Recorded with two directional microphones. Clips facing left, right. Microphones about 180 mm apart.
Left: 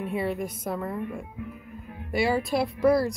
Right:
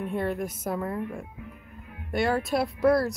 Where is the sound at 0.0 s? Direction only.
Centre (ahead or behind).